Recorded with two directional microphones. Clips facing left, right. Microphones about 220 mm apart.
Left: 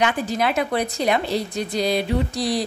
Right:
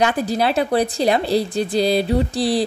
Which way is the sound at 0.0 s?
35° right (ahead or behind).